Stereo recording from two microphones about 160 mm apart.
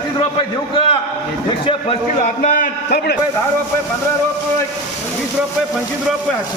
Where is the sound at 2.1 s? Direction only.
55° left (ahead or behind); by 3.2 s 90° left.